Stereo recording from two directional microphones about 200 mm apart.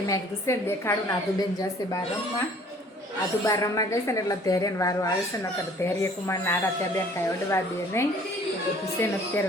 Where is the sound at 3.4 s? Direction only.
15° left (ahead or behind).